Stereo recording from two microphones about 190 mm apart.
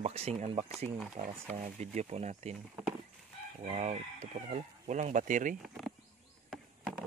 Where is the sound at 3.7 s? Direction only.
35° right (ahead or behind).